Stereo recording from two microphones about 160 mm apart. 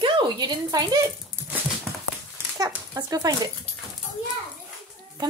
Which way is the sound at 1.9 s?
Centre (ahead or behind).